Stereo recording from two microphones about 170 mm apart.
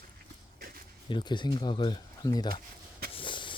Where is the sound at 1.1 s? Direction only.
30° left (ahead or behind).